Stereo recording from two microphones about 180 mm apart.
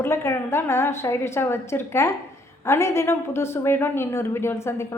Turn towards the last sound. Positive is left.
turn(degrees=15)  # may be behind; listen again after turning